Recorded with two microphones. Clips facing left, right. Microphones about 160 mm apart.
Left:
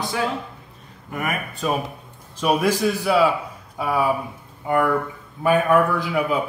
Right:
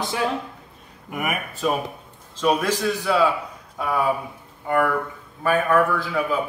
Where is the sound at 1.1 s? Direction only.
10° right (ahead or behind).